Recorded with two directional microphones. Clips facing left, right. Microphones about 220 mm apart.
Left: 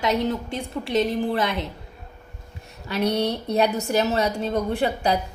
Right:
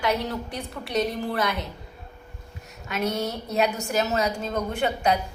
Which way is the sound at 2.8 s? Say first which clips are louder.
Left 4 dB; 35° left (ahead or behind).